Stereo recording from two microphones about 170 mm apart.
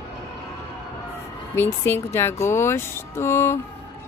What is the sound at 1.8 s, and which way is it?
Speech, 15° left (ahead or behind).